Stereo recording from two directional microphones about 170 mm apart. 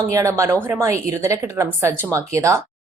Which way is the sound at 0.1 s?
20° right (ahead or behind).